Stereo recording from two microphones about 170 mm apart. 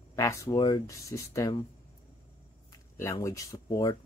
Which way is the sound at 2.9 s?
20° left (ahead or behind).